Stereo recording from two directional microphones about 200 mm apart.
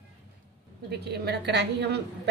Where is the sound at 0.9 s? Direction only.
55° right (ahead or behind).